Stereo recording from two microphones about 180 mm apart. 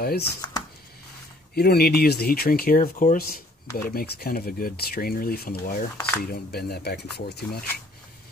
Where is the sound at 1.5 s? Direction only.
60° left (ahead or behind).